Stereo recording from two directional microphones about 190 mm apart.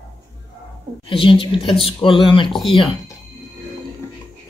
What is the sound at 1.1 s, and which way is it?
Speech, 25° left (ahead or behind).